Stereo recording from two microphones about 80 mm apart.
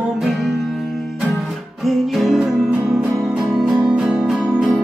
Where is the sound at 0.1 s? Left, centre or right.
Centre.